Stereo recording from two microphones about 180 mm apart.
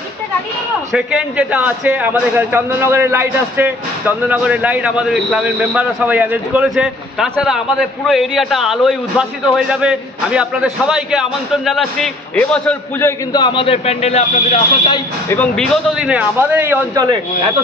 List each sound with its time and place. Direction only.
0.9 s a man's voice: 5° right (ahead or behind)
13.3 s speech: 25° left (ahead or behind)
15.2 s a man's voice: 10° left (ahead or behind); by 17.2 s 20° right (ahead or behind)